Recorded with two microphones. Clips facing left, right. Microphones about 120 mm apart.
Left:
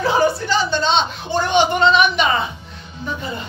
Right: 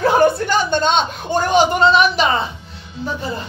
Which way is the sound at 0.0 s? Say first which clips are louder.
Right 3 dB; 55° right (ahead or behind).